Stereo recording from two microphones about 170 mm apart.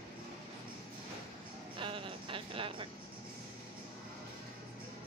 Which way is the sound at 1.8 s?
30° right (ahead or behind).